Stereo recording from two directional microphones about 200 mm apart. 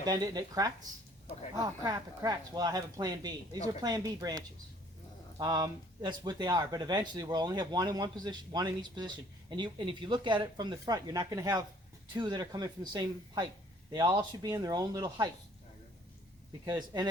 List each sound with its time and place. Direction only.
0.0 s speech: 20° right (ahead or behind)
16.6 s speech: 20° right (ahead or behind)